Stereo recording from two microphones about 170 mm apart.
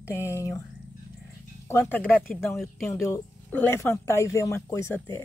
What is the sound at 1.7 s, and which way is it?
Speech, 10° left (ahead or behind).